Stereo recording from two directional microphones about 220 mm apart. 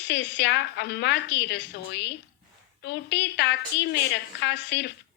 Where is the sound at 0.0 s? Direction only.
55° left (ahead or behind).